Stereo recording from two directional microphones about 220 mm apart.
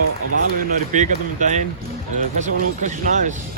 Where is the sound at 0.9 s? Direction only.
35° right (ahead or behind).